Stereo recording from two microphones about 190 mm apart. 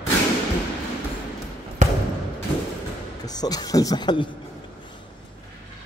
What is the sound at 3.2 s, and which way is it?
Speech, 20° left (ahead or behind).